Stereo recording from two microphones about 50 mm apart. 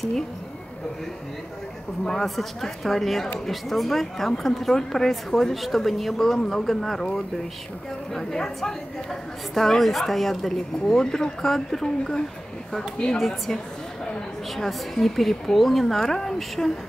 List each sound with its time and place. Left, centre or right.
2.0 s a woman's voice: centre
13.2 s a woman's voice: centre
14.6 s a woman's voice: centre